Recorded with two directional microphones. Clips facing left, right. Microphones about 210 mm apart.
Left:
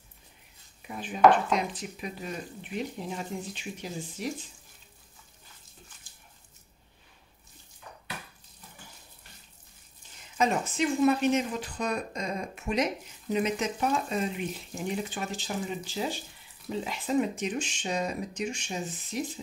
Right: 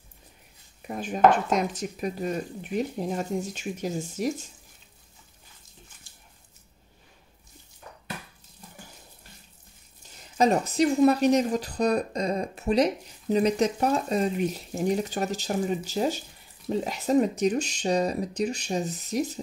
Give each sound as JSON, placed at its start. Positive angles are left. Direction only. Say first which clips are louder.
{"t": 0.8, "sound": "speech", "louder": "right 1 dB", "side_deg": -45}
{"t": 10.3, "sound": "speech", "louder": "right 5 dB", "side_deg": -40}